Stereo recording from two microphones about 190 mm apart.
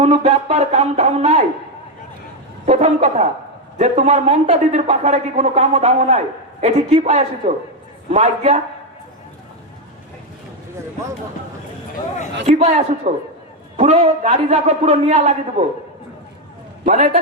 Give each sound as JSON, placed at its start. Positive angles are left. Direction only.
{"t": 0.0, "sound": "speech", "side_deg": -35}
{"t": 2.6, "sound": "speech", "side_deg": -35}
{"t": 12.5, "sound": "speech", "side_deg": -35}
{"t": 16.8, "sound": "speech", "side_deg": -40}